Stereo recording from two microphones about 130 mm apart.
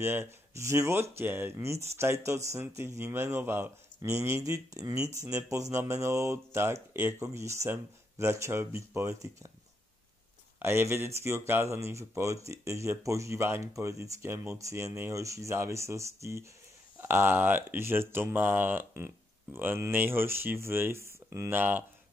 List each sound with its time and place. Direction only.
0.0 s speech: 20° right (ahead or behind)
10.6 s speech: 20° right (ahead or behind)